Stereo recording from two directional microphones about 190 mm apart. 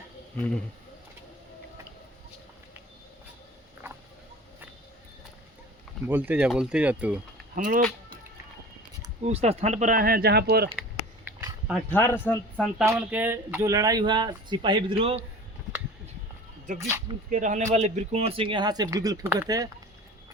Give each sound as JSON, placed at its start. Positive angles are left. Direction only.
{"t": 3.8, "sound": "a sound", "side_deg": -10}
{"t": 6.1, "sound": "speech", "side_deg": -10}
{"t": 7.5, "sound": "speech", "side_deg": -45}
{"t": 9.2, "sound": "speech", "side_deg": -35}
{"t": 11.7, "sound": "speech", "side_deg": 10}
{"t": 12.8, "sound": "speech", "side_deg": -10}
{"t": 16.7, "sound": "speech", "side_deg": -15}
{"t": 17.2, "sound": "speech", "side_deg": -45}